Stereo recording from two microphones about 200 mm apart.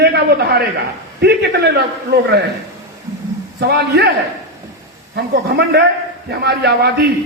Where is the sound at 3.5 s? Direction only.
55° right (ahead or behind).